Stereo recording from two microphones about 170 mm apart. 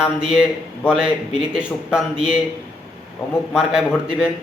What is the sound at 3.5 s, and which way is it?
Speech, 5° right (ahead or behind).